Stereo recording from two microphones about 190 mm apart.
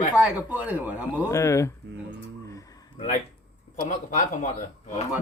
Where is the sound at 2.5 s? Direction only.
15° left (ahead or behind).